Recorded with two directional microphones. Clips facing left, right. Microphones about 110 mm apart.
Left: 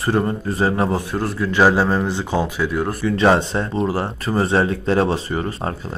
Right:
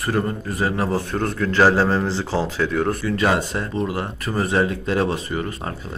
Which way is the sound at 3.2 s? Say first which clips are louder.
Left 8 dB; 25° left (ahead or behind).